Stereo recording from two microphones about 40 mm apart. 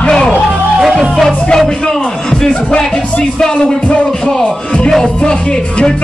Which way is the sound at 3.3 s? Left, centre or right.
Centre.